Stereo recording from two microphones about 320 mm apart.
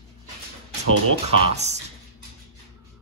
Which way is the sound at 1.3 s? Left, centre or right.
Centre.